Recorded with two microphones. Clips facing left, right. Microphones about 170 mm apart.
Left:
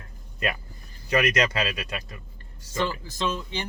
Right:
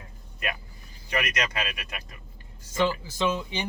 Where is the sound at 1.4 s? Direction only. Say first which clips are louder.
Left 6 dB; 30° left (ahead or behind).